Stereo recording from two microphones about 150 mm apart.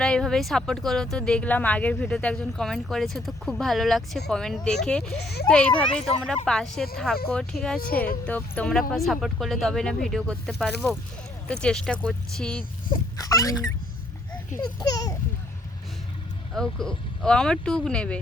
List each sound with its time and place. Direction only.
0.0 s speech: 5° left (ahead or behind)
13.1 s a sound: 25° left (ahead or behind)
16.6 s speech: 5° left (ahead or behind)